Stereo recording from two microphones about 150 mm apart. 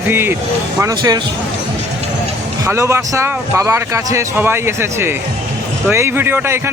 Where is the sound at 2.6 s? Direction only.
20° right (ahead or behind).